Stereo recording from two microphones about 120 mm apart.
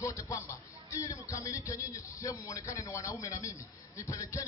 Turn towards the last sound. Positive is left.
turn(degrees=25)  # may be behind; listen again after turning